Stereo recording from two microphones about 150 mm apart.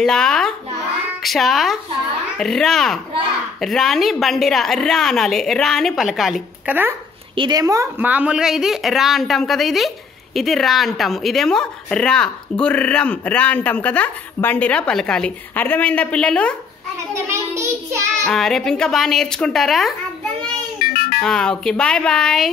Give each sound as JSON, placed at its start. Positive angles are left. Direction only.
{"t": 0.0, "sound": "a child's voice", "side_deg": 5}
{"t": 6.7, "sound": "speech", "side_deg": -15}
{"t": 7.3, "sound": "a woman's voice", "side_deg": -30}
{"t": 17.1, "sound": "child singing", "side_deg": -20}
{"t": 18.2, "sound": "a woman's voice", "side_deg": 5}
{"t": 20.9, "sound": "music", "side_deg": 70}
{"t": 21.2, "sound": "a woman's voice", "side_deg": 5}